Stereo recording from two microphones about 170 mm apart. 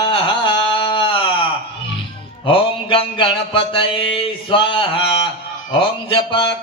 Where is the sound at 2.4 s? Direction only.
30° left (ahead or behind).